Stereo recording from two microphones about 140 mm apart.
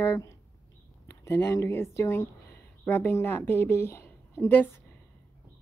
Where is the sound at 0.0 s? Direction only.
20° left (ahead or behind).